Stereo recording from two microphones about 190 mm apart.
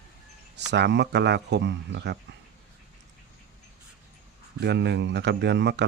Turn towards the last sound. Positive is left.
turn(degrees=-65)  # may be behind; listen again after turning